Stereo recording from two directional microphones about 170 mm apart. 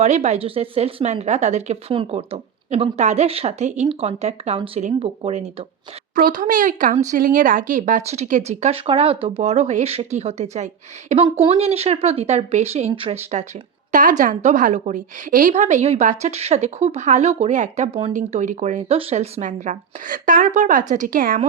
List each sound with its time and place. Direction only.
0.0 s a woman's voice: 40° right (ahead or behind)
6.1 s a woman's voice: 55° right (ahead or behind); by 13.4 s 35° right (ahead or behind)
13.9 s a woman's voice: 50° right (ahead or behind)